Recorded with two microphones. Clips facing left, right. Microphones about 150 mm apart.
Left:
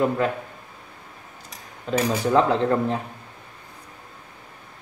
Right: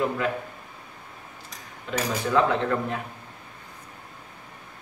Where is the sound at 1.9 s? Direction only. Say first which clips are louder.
Left 5 dB; 35° left (ahead or behind).